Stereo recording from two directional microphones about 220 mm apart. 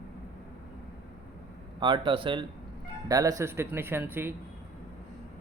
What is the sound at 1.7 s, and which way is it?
A man's voice, 20° right (ahead or behind).